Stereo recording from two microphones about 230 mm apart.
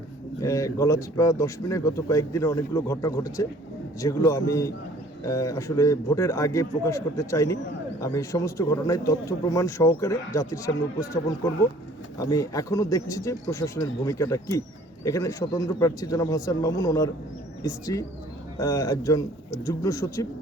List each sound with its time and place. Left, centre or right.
0.4 s speech: centre